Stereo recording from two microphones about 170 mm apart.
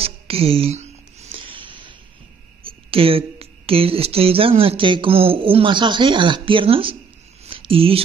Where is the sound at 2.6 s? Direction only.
35° right (ahead or behind).